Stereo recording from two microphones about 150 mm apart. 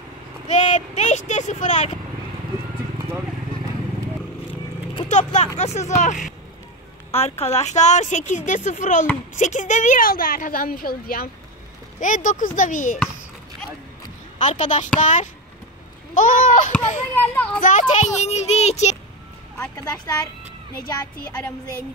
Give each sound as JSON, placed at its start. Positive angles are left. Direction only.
{"t": 0.5, "sound": "a woman's voice", "side_deg": 50}
{"t": 5.0, "sound": "a woman's voice", "side_deg": 50}
{"t": 7.1, "sound": "a woman's voice", "side_deg": 45}
{"t": 12.0, "sound": "speech", "side_deg": 55}
{"t": 14.4, "sound": "a woman's voice", "side_deg": 50}
{"t": 17.1, "sound": "a child's voice", "side_deg": 10}
{"t": 17.6, "sound": "a woman's voice", "side_deg": 55}
{"t": 20.8, "sound": "speech", "side_deg": 25}